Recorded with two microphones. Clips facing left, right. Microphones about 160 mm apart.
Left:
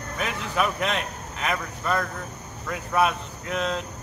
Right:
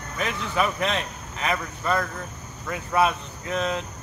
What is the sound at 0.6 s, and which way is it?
Speech, centre (ahead or behind).